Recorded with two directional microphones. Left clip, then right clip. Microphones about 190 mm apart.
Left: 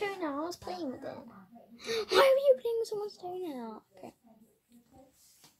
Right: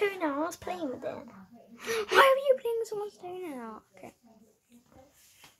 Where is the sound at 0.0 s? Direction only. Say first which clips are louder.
Right 5 dB; 25° right (ahead or behind).